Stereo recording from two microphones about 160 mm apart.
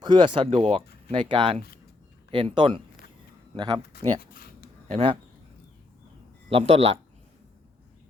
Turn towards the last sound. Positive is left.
turn(degrees=-35)  # may be behind; listen again after turning